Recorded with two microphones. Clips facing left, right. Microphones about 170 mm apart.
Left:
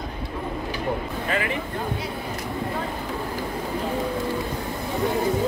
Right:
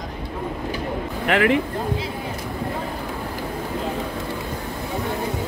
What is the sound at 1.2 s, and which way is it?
Speech, 75° right (ahead or behind).